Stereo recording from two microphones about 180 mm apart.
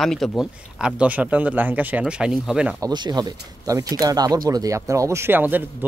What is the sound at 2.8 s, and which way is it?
Speech, 25° right (ahead or behind).